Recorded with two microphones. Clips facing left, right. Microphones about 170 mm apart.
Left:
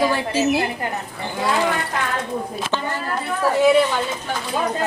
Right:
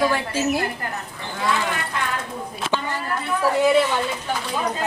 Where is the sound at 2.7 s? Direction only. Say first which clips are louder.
Even; 15° left (ahead or behind).